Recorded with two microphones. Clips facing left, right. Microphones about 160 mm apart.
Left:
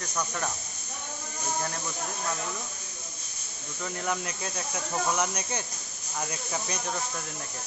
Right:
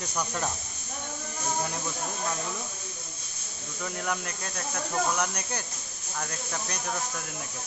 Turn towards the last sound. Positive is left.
turn(degrees=5)  # may be behind; listen again after turning